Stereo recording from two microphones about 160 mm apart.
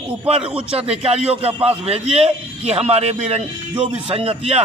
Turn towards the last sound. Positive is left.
turn(degrees=-40)  # may be behind; listen again after turning